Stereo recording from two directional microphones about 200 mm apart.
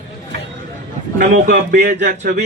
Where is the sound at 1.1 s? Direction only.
40° right (ahead or behind).